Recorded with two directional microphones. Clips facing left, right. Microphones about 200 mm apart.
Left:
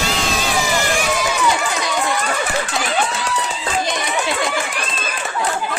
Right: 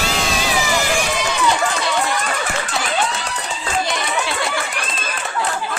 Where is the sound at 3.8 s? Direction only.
20° left (ahead or behind).